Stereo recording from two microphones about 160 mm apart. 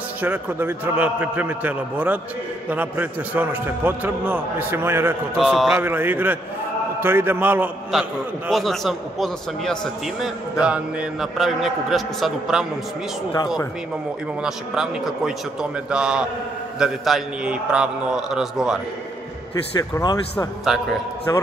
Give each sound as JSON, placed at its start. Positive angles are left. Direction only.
{"t": 0.2, "sound": "a man's voice", "side_deg": -10}
{"t": 5.4, "sound": "a man's voice", "side_deg": 0}
{"t": 5.7, "sound": "a man's voice", "side_deg": -15}
{"t": 14.4, "sound": "a man's voice", "side_deg": -5}
{"t": 19.8, "sound": "speech", "side_deg": 25}
{"t": 20.7, "sound": "a man's voice", "side_deg": 0}